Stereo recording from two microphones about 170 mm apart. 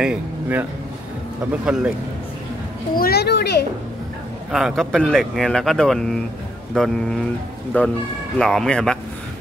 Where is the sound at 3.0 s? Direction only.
70° left (ahead or behind).